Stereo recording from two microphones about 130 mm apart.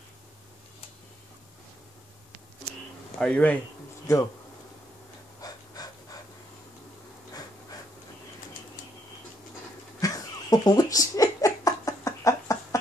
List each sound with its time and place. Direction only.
3.2 s speech: 10° left (ahead or behind)
5.4 s breathing: 30° left (ahead or behind)
9.9 s a sound: 25° left (ahead or behind)